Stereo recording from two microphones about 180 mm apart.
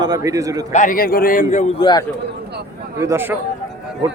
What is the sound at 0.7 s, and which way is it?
Speech, 45° left (ahead or behind).